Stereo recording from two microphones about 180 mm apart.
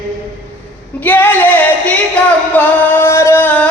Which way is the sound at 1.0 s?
10° left (ahead or behind).